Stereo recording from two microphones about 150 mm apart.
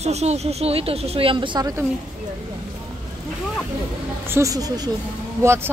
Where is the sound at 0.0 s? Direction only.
45° right (ahead or behind).